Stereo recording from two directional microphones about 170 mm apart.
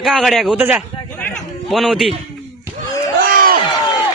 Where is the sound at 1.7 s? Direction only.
Centre (ahead or behind).